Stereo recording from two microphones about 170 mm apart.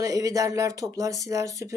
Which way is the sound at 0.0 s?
20° right (ahead or behind).